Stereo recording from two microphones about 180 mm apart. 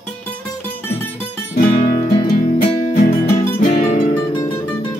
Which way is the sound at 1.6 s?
50° left (ahead or behind).